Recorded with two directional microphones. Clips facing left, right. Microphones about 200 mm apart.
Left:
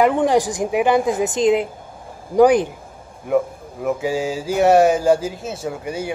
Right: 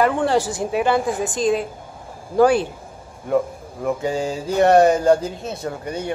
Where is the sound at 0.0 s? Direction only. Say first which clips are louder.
Left 2 dB; 15° left (ahead or behind).